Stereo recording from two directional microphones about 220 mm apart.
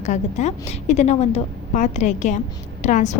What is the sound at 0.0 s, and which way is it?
A woman's voice, 30° left (ahead or behind).